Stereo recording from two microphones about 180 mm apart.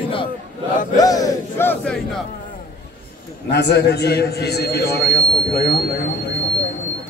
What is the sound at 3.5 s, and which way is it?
A man's voice, 65° left (ahead or behind).